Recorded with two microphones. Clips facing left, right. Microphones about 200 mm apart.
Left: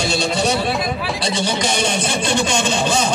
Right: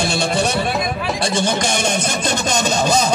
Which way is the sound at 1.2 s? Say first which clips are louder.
Right 3 dB; 50° right (ahead or behind).